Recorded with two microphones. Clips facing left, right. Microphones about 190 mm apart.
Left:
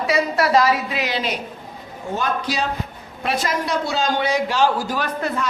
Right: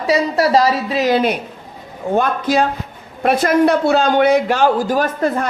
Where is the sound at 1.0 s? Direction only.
55° right (ahead or behind).